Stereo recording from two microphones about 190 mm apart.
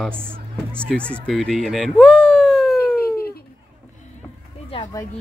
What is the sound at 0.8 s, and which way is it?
Speech, 5° left (ahead or behind).